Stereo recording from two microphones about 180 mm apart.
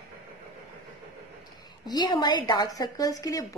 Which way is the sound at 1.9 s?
25° left (ahead or behind).